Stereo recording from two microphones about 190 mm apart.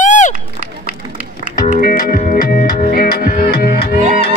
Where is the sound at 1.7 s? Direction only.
50° left (ahead or behind).